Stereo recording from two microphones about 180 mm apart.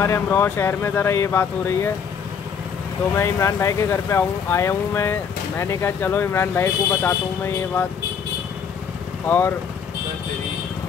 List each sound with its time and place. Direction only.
0.0 s speech: 15° left (ahead or behind)
3.2 s speech: 15° left (ahead or behind)